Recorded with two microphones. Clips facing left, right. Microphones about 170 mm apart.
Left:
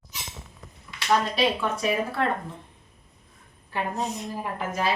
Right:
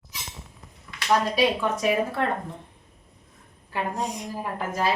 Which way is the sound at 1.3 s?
15° right (ahead or behind).